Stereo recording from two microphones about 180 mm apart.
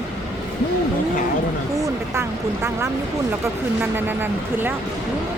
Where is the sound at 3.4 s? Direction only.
10° right (ahead or behind).